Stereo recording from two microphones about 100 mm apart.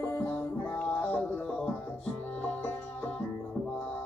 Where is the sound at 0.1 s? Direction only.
15° left (ahead or behind).